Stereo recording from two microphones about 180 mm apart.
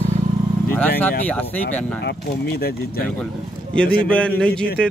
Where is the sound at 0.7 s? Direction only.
10° left (ahead or behind).